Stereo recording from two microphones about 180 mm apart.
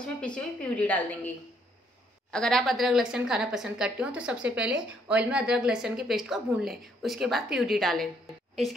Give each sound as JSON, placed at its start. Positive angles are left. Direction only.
{"t": 0.0, "sound": "a woman's voice", "side_deg": 5}
{"t": 2.3, "sound": "a woman's voice", "side_deg": 5}